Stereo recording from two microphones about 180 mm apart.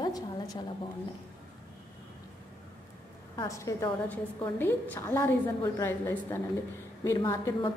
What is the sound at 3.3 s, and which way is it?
A woman's voice, 15° left (ahead or behind).